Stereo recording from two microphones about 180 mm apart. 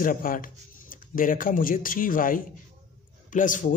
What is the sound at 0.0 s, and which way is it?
A man's voice, 50° left (ahead or behind).